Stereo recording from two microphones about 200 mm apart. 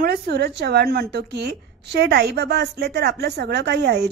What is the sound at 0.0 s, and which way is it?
A woman's voice, 55° right (ahead or behind).